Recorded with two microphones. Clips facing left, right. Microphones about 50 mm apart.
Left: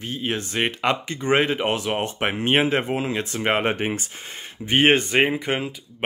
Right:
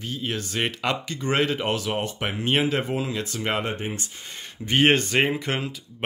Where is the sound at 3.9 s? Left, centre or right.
Left.